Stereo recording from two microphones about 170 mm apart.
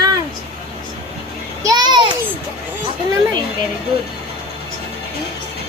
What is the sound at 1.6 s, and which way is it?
Speech, 25° right (ahead or behind).